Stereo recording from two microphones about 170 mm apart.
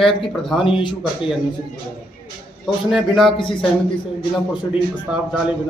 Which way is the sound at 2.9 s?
Centre (ahead or behind).